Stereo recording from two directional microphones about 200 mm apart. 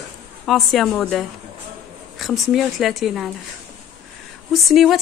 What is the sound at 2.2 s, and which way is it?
A woman's voice, centre (ahead or behind).